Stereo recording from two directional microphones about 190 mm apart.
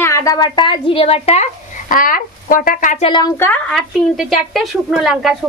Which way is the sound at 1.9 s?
45° left (ahead or behind).